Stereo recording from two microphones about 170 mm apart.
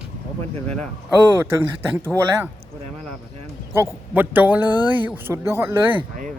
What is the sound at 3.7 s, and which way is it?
Speech, 10° right (ahead or behind).